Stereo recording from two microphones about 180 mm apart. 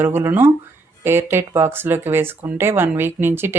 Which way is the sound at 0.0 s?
10° right (ahead or behind).